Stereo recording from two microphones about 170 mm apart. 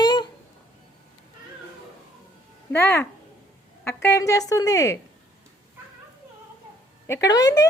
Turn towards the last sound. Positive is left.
turn(degrees=20)  # may be behind; listen again after turning